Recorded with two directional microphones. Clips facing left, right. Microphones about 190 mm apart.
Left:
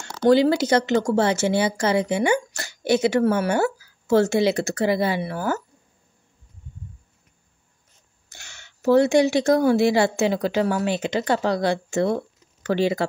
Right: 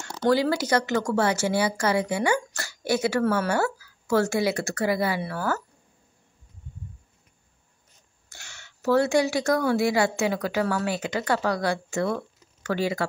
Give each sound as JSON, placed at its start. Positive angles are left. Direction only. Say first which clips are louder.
{"t": 0.2, "sound": "speech", "louder": "left 5 dB", "side_deg": 25}
{"t": 8.3, "sound": "speech", "louder": "left 1 dB", "side_deg": 20}